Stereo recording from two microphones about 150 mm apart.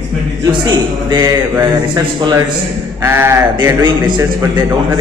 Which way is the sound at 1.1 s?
25° right (ahead or behind).